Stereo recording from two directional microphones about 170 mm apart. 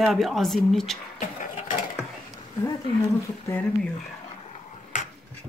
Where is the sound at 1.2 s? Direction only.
45° left (ahead or behind).